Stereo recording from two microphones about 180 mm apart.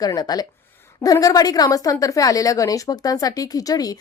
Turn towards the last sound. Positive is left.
turn(degrees=20)  # may be behind; listen again after turning